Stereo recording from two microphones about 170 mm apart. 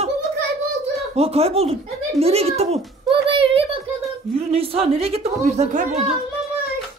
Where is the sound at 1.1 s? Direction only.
35° right (ahead or behind).